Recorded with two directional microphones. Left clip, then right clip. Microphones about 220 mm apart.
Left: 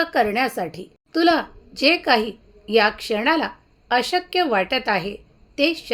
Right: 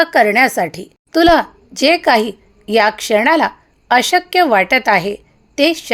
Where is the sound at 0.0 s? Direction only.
20° right (ahead or behind).